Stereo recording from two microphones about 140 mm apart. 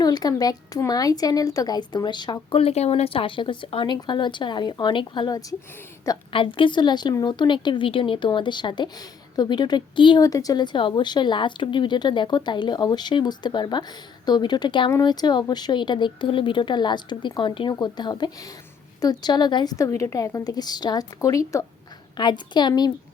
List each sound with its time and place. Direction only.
0.0 s speech: 30° left (ahead or behind)
19.7 s a woman's voice: 20° left (ahead or behind)